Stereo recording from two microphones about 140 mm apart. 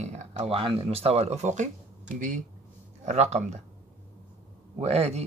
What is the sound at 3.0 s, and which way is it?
Speech, 50° right (ahead or behind).